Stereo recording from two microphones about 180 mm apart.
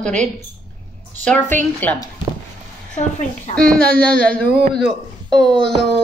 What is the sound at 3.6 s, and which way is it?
Speech, 55° right (ahead or behind).